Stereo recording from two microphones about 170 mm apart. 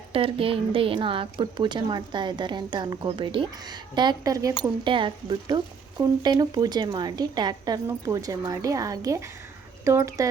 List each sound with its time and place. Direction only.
0.1 s speech: 35° right (ahead or behind)